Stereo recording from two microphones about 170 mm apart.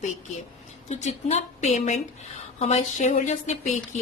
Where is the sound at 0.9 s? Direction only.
40° left (ahead or behind).